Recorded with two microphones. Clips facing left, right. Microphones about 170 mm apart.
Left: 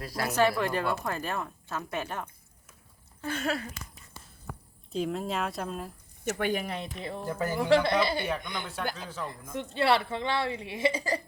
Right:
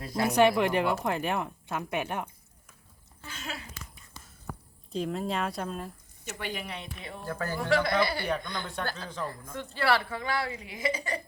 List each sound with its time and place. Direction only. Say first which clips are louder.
0.0 s speech: right 3 dB; 20° right (ahead or behind)
3.2 s speech: left 10 dB; 55° left (ahead or behind)
4.9 s speech: even; centre (ahead or behind)
6.2 s speech: left 7 dB; 50° left (ahead or behind)
7.3 s speech: left 4 dB; 20° left (ahead or behind)